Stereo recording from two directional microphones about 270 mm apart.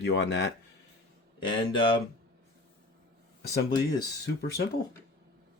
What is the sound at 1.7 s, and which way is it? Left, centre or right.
Speech, centre.